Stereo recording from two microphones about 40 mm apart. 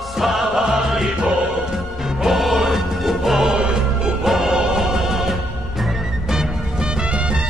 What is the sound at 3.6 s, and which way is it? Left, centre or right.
Music, right.